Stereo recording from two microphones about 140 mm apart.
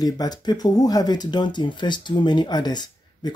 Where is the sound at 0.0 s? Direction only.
30° left (ahead or behind).